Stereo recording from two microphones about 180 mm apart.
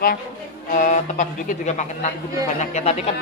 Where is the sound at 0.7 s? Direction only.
45° left (ahead or behind).